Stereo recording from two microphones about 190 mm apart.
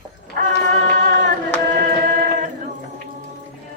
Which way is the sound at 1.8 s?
50° right (ahead or behind).